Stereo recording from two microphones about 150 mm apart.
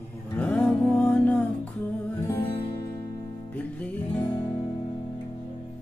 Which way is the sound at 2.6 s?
30° left (ahead or behind).